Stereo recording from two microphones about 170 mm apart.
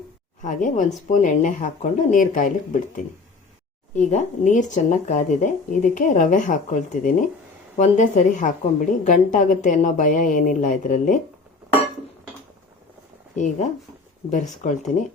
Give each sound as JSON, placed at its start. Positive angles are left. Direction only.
{"t": 0.4, "sound": "a woman's voice", "side_deg": 50}
{"t": 3.9, "sound": "a woman's voice", "side_deg": 45}
{"t": 13.3, "sound": "a woman's voice", "side_deg": 45}